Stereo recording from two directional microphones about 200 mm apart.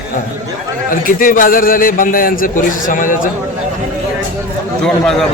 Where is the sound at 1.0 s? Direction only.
45° left (ahead or behind).